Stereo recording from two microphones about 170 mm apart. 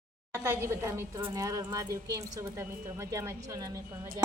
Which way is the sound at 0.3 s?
15° right (ahead or behind).